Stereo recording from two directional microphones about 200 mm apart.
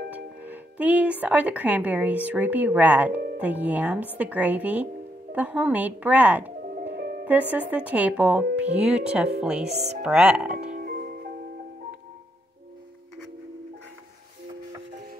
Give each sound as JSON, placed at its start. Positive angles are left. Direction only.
{"t": 0.4, "sound": "speech", "side_deg": -10}
{"t": 6.8, "sound": "music", "side_deg": -45}
{"t": 7.5, "sound": "speech", "side_deg": -5}
{"t": 9.7, "sound": "speech", "side_deg": -35}
{"t": 10.0, "sound": "speech", "side_deg": -5}
{"t": 10.7, "sound": "music", "side_deg": -45}